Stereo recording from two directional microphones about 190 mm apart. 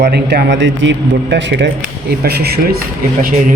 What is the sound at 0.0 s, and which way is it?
A man's voice, 60° right (ahead or behind).